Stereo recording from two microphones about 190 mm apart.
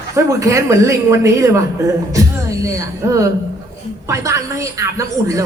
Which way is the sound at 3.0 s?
15° right (ahead or behind).